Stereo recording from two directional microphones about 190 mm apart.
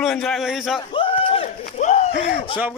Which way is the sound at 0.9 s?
30° left (ahead or behind).